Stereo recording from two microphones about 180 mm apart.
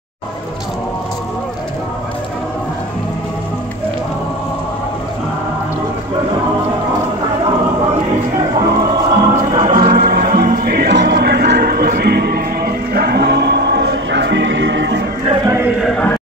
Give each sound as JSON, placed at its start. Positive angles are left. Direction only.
{"t": 8.5, "sound": "music", "side_deg": -20}
{"t": 9.8, "sound": "music", "side_deg": -60}
{"t": 15.4, "sound": "a sound", "side_deg": -15}